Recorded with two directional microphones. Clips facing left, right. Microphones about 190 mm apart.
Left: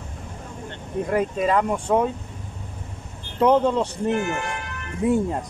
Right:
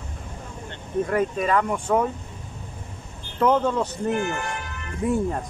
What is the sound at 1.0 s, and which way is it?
Speech, 20° left (ahead or behind).